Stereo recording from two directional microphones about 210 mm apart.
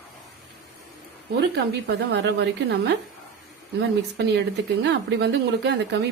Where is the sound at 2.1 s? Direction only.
55° right (ahead or behind).